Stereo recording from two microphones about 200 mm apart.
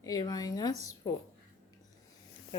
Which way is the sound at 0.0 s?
20° left (ahead or behind).